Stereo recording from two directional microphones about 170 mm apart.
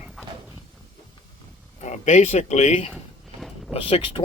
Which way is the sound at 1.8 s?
45° left (ahead or behind).